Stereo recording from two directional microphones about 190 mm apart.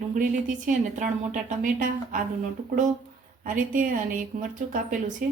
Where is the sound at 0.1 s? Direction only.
45° right (ahead or behind).